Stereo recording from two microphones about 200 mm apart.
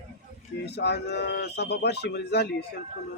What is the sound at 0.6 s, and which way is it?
A man's voice, 55° left (ahead or behind).